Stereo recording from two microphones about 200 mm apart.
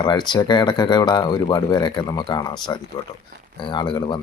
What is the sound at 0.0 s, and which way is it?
Speech, 20° left (ahead or behind).